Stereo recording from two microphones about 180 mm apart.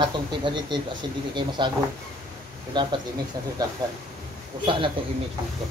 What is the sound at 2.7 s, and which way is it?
Speech, 25° right (ahead or behind).